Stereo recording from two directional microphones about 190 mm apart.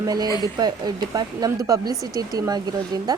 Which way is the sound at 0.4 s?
20° right (ahead or behind).